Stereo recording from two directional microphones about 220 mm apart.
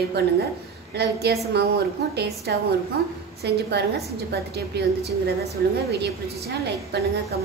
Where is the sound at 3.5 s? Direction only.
50° right (ahead or behind).